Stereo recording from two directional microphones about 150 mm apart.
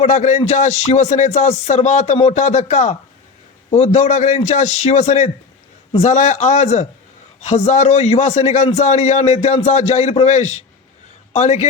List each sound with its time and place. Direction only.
0.0 s a man's voice: 50° left (ahead or behind)